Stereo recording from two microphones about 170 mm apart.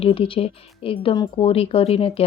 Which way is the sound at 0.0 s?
30° left (ahead or behind).